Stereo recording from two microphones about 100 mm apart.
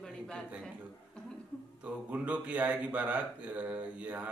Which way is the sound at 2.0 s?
15° right (ahead or behind).